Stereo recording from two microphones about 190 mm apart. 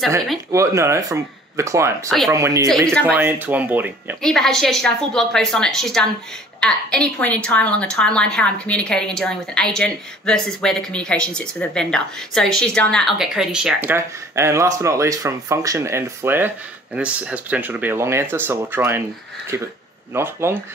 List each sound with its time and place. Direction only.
0.5 s speech: 15° right (ahead or behind)
2.0 s a woman's voice: centre (ahead or behind)
2.3 s speech: 15° right (ahead or behind)
4.2 s a woman's voice: 5° left (ahead or behind)
20.2 s speech: 15° right (ahead or behind)